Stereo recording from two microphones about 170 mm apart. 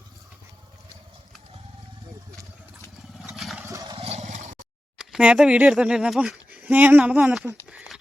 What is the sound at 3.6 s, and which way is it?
Vehicle, 20° right (ahead or behind).